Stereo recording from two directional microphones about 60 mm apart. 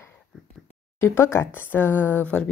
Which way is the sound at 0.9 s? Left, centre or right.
Left.